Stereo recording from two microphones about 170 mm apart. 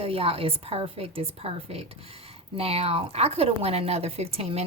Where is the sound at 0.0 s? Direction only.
35° right (ahead or behind).